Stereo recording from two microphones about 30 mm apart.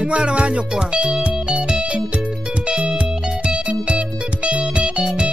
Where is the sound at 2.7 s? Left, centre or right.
Right.